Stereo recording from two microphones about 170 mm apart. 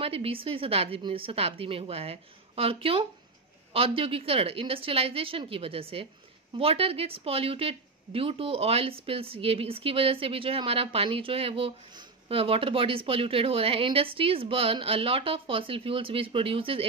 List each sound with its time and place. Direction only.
0.0 s a woman's voice: 35° right (ahead or behind)